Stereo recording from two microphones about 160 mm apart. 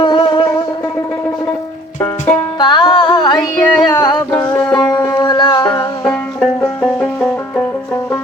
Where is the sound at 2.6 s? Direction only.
30° left (ahead or behind).